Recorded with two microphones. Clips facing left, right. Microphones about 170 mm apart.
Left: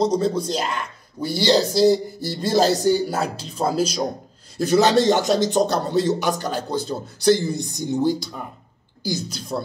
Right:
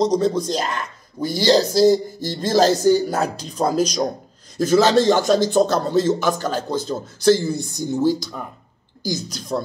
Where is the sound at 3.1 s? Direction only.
5° left (ahead or behind).